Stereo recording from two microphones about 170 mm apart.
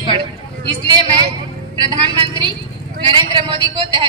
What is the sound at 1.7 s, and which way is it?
A woman's voice, 25° right (ahead or behind).